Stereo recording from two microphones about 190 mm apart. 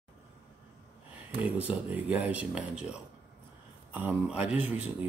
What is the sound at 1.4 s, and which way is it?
Speech, 5° right (ahead or behind).